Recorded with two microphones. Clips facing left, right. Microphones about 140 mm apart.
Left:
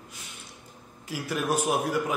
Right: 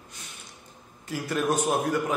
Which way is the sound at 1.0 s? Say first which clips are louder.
Right 2 dB; 5° left (ahead or behind).